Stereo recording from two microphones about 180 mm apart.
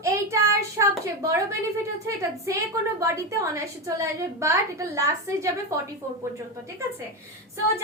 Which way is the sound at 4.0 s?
15° right (ahead or behind).